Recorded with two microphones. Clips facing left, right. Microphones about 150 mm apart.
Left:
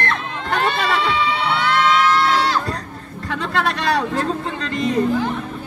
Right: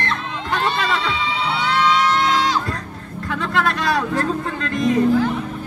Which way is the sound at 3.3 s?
Centre (ahead or behind).